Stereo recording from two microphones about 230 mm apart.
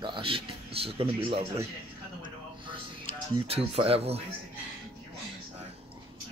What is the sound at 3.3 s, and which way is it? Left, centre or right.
Speech, right.